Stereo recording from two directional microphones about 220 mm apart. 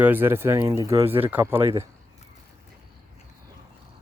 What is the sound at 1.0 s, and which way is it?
Speech, 25° right (ahead or behind).